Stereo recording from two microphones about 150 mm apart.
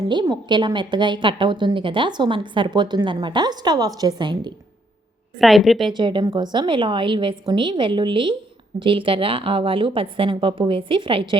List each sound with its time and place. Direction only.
0.0 s a woman's voice: 30° right (ahead or behind)
5.4 s a woman's voice: centre (ahead or behind)
5.9 s a woman's voice: 30° right (ahead or behind)